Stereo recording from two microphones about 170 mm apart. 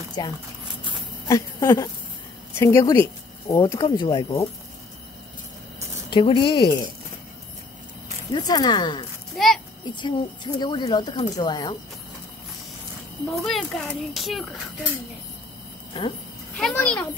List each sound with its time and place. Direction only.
0.2 s speech: 25° left (ahead or behind)
6.0 s speech: 30° left (ahead or behind)
8.3 s speech: 25° left (ahead or behind)
9.3 s a child's voice: centre (ahead or behind)
9.9 s speech: 25° left (ahead or behind)
13.3 s a child's voice: centre (ahead or behind)
16.0 s speech: 30° left (ahead or behind)
16.5 s a child's voice: 5° left (ahead or behind)